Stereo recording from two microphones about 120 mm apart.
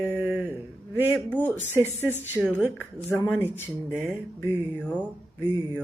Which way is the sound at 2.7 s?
15° left (ahead or behind).